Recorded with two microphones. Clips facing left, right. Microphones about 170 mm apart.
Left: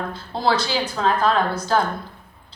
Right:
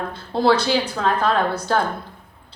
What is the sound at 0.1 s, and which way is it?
A woman's voice, 60° right (ahead or behind).